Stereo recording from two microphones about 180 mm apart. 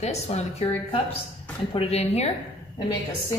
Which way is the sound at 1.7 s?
35° left (ahead or behind).